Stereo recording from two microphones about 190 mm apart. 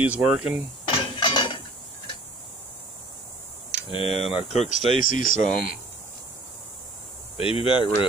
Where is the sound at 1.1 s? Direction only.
25° left (ahead or behind).